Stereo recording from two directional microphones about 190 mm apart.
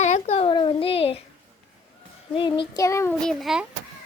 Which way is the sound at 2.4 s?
25° left (ahead or behind).